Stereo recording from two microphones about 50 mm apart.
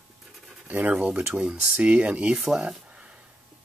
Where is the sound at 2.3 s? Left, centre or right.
Centre.